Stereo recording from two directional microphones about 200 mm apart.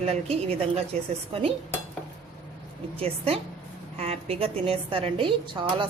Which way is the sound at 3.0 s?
30° right (ahead or behind).